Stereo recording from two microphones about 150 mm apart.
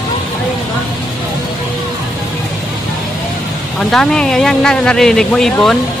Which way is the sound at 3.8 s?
5° left (ahead or behind).